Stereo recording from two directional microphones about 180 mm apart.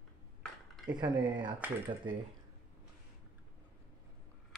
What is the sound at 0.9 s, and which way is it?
Speech, 25° right (ahead or behind).